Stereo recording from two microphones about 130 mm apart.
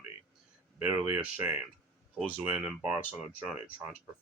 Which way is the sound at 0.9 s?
15° right (ahead or behind).